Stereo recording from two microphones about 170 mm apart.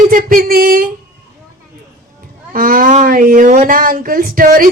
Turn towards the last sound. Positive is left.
turn(degrees=-55)  # may be behind; listen again after turning